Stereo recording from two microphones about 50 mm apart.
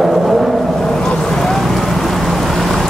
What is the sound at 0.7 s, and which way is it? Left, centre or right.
Boat, centre.